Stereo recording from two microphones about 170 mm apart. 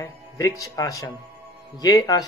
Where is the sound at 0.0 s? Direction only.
20° left (ahead or behind).